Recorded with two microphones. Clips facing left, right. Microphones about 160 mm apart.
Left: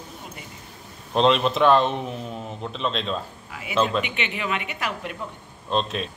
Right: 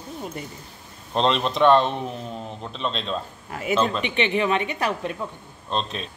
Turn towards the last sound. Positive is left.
turn(degrees=0)  # may be behind; listen again after turning